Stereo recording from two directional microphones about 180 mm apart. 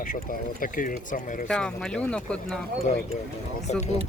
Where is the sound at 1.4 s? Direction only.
5° left (ahead or behind).